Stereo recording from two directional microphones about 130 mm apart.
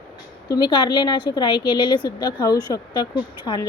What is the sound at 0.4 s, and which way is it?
Speech, 35° left (ahead or behind).